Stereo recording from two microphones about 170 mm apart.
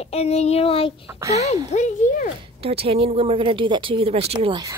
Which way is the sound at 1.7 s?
45° left (ahead or behind).